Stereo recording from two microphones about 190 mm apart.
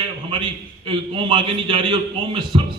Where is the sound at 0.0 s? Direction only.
25° right (ahead or behind).